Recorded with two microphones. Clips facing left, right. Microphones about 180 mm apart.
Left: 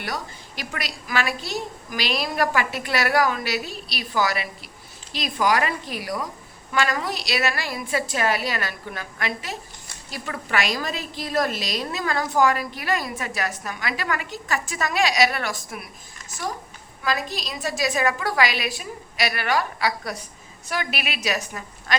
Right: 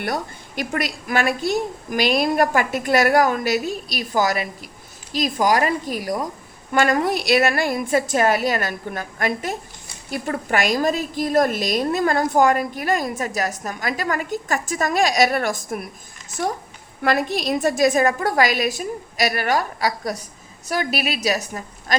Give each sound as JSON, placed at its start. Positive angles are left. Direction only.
{"t": 0.0, "sound": "a woman's voice", "side_deg": -50}
{"t": 17.0, "sound": "a woman's voice", "side_deg": -60}